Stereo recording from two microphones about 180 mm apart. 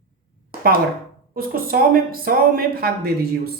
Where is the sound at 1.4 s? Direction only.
55° right (ahead or behind).